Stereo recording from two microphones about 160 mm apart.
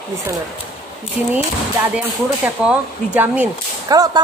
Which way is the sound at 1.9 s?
5° right (ahead or behind).